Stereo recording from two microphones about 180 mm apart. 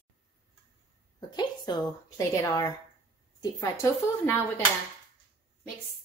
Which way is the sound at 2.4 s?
20° left (ahead or behind).